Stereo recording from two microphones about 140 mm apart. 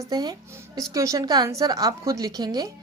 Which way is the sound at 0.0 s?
30° right (ahead or behind).